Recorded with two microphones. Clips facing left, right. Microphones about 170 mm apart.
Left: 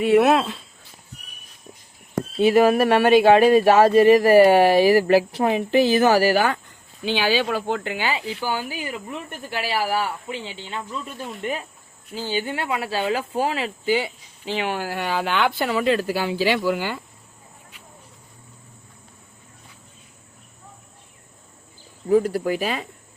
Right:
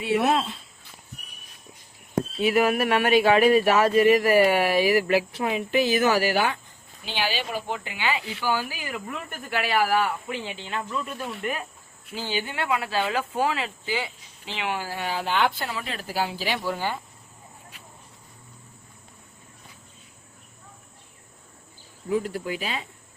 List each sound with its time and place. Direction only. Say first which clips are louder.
0.0 s speech: left 7 dB; 60° left (ahead or behind); by 0.5 s 80° left
2.4 s speech: left 6 dB; 30° left (ahead or behind)
7.2 s speech: left 5 dB; 90° left
7.9 s speech: left 3 dB; 35° left (ahead or behind)
12.5 s speech: left 2 dB; 35° left (ahead or behind)
14.8 s speech: left 5 dB; 70° left (ahead or behind); by 17.0 s 90° left
22.1 s speech: left 8 dB; 40° left (ahead or behind)